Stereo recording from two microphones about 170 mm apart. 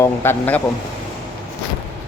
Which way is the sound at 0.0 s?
15° left (ahead or behind).